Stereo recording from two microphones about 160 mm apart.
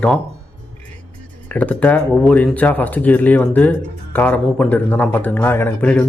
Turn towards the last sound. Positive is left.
turn(degrees=10)  # may be behind; listen again after turning